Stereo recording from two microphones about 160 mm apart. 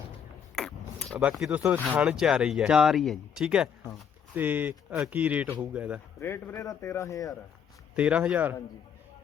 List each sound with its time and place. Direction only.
0.5 s mechanisms: centre (ahead or behind)
1.0 s a sound: 15° right (ahead or behind)
1.3 s speech: 5° right (ahead or behind)
6.1 s a man's voice: 15° left (ahead or behind)
7.9 s speech: 5° right (ahead or behind)